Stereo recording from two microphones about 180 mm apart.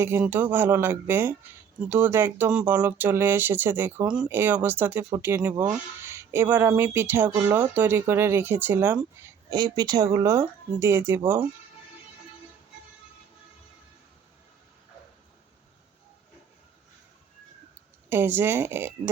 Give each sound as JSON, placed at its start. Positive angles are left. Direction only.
{"t": 0.0, "sound": "speech", "side_deg": -10}
{"t": 18.1, "sound": "speech", "side_deg": -10}